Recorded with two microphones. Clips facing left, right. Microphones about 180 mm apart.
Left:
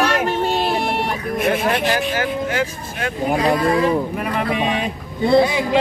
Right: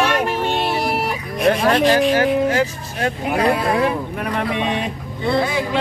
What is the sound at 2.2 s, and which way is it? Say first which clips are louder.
Speech: right 5 dB; 35° right (ahead or behind).